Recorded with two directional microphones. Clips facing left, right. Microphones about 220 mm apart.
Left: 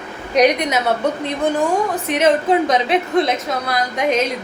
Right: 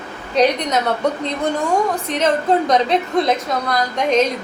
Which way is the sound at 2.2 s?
5° left (ahead or behind).